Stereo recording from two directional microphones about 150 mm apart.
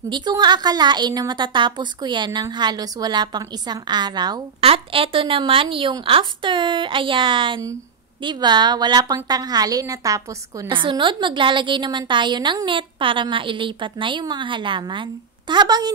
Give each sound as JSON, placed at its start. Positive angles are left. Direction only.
{"t": 0.1, "sound": "a woman's voice", "side_deg": -30}
{"t": 4.6, "sound": "a woman's voice", "side_deg": -40}
{"t": 10.7, "sound": "a woman's voice", "side_deg": -35}